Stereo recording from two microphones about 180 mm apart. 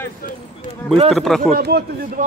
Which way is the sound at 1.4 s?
60° right (ahead or behind).